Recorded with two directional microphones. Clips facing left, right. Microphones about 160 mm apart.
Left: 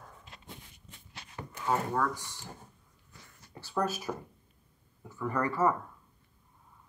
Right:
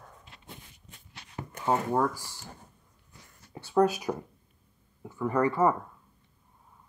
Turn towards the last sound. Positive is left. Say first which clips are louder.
# right 4 dB
turn(degrees=-25)  # may be behind; listen again after turning